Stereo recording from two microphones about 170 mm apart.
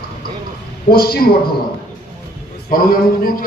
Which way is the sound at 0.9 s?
65° left (ahead or behind).